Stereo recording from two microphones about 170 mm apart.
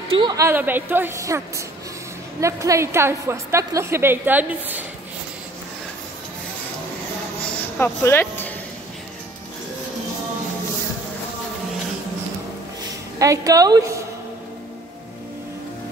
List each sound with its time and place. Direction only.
0.2 s a woman's voice: 15° right (ahead or behind)
2.4 s a woman's voice: 20° right (ahead or behind)
7.8 s speech: 10° left (ahead or behind)
13.2 s a woman's voice: 20° right (ahead or behind)